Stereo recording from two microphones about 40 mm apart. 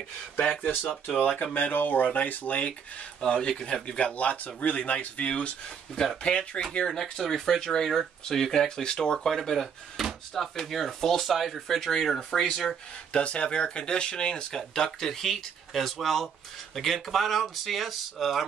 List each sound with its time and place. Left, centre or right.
0.4 s speech: left
1.4 s speech: left
3.2 s speech: left
3.9 s speech: left
6.7 s speech: centre
9.6 s speech: centre
13.1 s speech: left; by 18.5 s centre